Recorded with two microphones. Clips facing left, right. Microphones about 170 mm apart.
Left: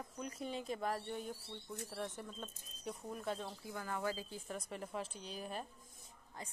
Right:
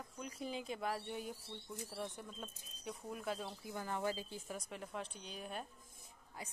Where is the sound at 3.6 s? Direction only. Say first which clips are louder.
Right 1 dB; 20° right (ahead or behind).